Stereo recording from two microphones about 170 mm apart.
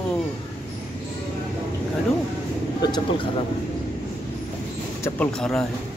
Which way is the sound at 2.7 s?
25° left (ahead or behind).